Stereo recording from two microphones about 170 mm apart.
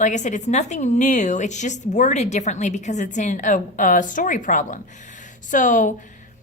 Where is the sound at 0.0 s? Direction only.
45° left (ahead or behind).